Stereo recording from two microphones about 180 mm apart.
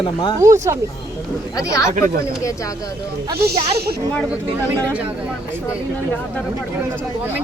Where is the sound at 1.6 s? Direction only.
20° left (ahead or behind).